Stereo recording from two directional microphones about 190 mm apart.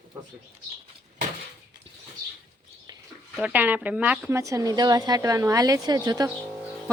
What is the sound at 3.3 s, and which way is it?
A woman's voice, 10° right (ahead or behind).